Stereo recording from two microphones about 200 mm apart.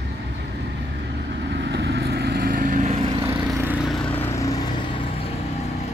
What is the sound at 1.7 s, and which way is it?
Vehicle, 55° right (ahead or behind).